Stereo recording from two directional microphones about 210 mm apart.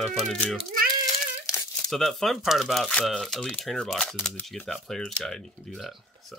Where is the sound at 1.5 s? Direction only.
15° left (ahead or behind).